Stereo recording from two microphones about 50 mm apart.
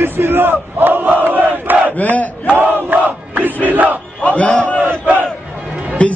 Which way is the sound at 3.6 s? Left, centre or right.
Right.